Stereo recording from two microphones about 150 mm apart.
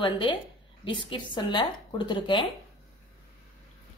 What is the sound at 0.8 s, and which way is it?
A woman's voice, 30° left (ahead or behind).